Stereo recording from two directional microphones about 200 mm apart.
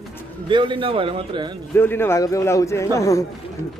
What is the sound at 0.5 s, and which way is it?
Speech, 25° right (ahead or behind).